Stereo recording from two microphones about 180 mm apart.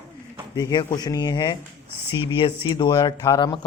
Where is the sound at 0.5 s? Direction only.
20° left (ahead or behind).